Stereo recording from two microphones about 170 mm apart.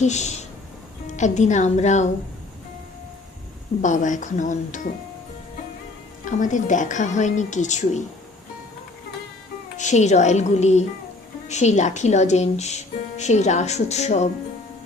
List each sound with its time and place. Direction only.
0.0 s a woman's voice: 40° left (ahead or behind)
3.8 s a woman's voice: 45° left (ahead or behind)
6.2 s a woman's voice: 50° left (ahead or behind)
9.7 s a woman's voice: 45° left (ahead or behind)